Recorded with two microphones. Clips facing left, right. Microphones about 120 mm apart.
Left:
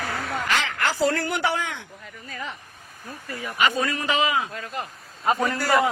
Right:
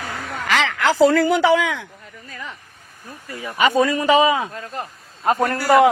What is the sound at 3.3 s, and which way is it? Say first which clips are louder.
Speech: right 2 dB; 25° right (ahead or behind).